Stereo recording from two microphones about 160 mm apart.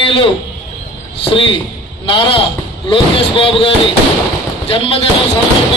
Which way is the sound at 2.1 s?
35° left (ahead or behind).